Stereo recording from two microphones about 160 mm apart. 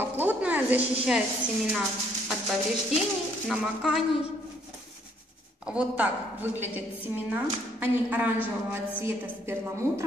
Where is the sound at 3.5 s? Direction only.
5° right (ahead or behind).